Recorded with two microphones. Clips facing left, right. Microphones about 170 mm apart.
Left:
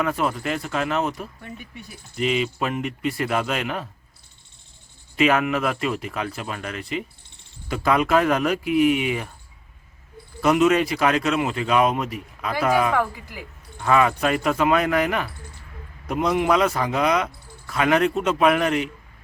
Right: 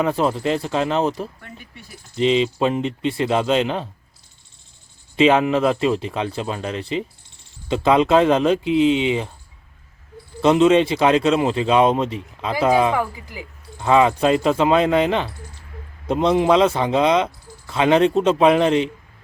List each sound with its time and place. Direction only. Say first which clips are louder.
0.0 s speech: right 4 dB; 30° right (ahead or behind)
5.1 s speech: right 4 dB; 25° right (ahead or behind)
10.4 s speech: right 4 dB; 25° right (ahead or behind)
12.9 s speech: right 1 dB; 10° right (ahead or behind)
13.8 s speech: right 4 dB; 25° right (ahead or behind)